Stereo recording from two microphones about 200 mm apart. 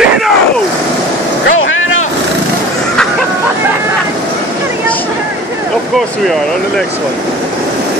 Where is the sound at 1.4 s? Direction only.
80° left.